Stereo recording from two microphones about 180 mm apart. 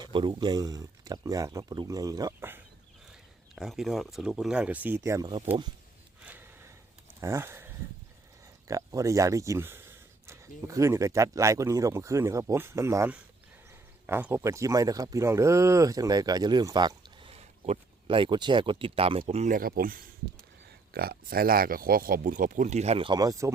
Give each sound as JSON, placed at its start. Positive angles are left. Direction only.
{"t": 0.0, "sound": "speech", "side_deg": -25}
{"t": 3.5, "sound": "speech", "side_deg": 0}
{"t": 6.2, "sound": "gasp", "side_deg": -10}
{"t": 7.2, "sound": "speech", "side_deg": -15}